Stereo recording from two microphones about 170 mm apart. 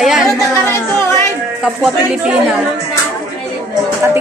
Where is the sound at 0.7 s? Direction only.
15° left (ahead or behind).